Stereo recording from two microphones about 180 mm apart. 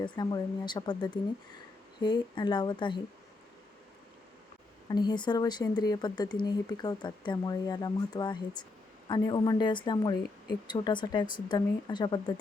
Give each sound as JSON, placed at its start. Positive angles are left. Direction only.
{"t": 0.0, "sound": "speech", "side_deg": 25}
{"t": 4.9, "sound": "speech", "side_deg": 25}